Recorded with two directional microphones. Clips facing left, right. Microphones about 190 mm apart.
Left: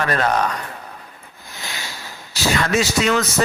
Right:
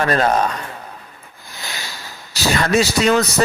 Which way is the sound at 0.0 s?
30° right (ahead or behind).